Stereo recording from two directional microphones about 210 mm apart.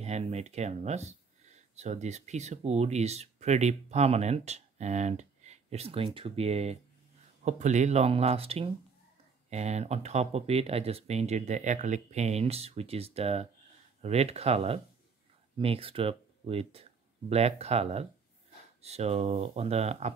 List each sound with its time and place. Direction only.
0.0 s speech: 30° right (ahead or behind)